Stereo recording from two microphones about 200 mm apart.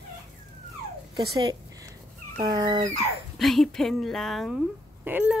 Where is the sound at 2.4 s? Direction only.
20° right (ahead or behind).